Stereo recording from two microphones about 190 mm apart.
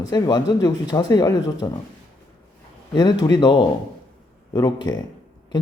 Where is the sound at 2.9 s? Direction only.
20° left (ahead or behind).